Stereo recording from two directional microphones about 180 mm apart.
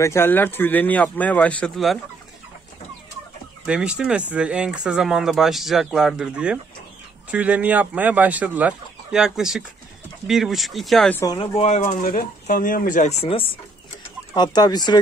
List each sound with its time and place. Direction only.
0.0 s speech: 15° left (ahead or behind)
3.6 s speech: 5° right (ahead or behind)
11.3 s speech: 35° left (ahead or behind)